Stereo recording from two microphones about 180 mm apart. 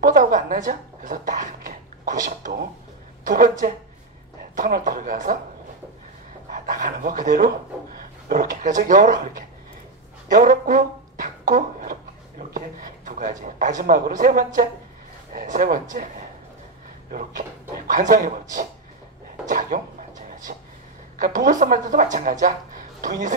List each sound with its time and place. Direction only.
0.0 s speech: 45° right (ahead or behind)
6.5 s speech: 50° right (ahead or behind)
10.3 s speech: 45° right (ahead or behind)
17.1 s speech: 45° right (ahead or behind)
19.4 s a sound: 45° right (ahead or behind)
21.2 s speech: 45° right (ahead or behind)